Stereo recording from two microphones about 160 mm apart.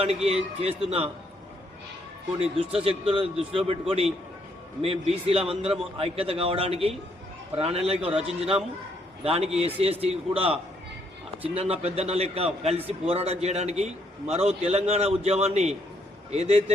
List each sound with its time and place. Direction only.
0.0 s a man's voice: 40° right (ahead or behind)
2.4 s a man's voice: 35° right (ahead or behind)